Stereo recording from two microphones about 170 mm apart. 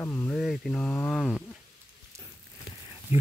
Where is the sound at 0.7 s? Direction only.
15° left (ahead or behind).